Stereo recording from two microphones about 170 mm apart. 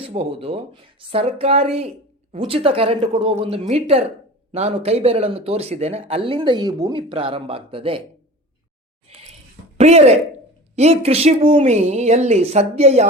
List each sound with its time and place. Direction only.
0.0 s speech: 35° right (ahead or behind)
9.7 s speech: 40° right (ahead or behind)